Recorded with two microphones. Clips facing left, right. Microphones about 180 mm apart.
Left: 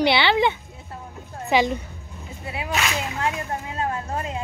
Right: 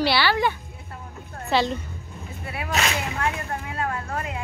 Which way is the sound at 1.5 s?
15° left (ahead or behind).